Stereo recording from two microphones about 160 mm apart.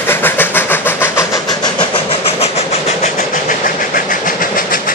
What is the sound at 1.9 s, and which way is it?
Train, 40° left (ahead or behind).